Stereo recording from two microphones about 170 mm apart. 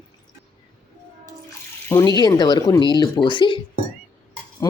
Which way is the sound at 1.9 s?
20° left (ahead or behind).